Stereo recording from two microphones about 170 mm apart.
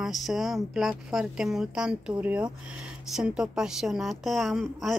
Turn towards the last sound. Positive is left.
turn(degrees=0)  # may be behind; listen again after turning